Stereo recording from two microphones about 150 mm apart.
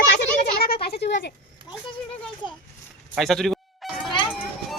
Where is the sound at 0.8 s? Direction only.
90° left.